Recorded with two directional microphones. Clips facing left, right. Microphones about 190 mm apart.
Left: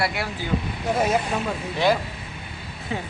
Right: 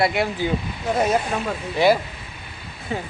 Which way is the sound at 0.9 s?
5° left (ahead or behind).